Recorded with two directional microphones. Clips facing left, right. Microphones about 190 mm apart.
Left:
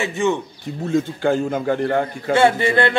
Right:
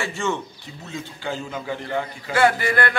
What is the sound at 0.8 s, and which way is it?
A man's voice, 50° left (ahead or behind).